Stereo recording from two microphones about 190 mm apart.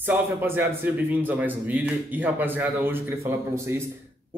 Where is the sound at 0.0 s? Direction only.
10° right (ahead or behind).